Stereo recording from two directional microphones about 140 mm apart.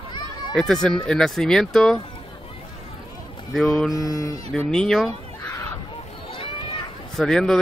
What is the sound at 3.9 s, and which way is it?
Speech, 25° left (ahead or behind).